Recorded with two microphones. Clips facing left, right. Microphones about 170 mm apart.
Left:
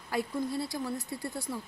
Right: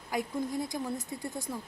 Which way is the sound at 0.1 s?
15° right (ahead or behind).